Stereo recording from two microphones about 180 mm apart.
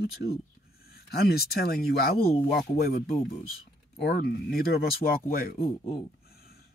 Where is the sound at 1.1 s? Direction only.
60° left (ahead or behind).